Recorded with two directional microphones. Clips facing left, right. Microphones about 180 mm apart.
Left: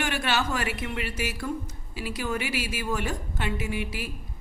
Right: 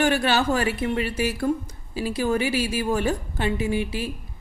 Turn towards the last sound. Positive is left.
turn(degrees=-30)  # may be behind; listen again after turning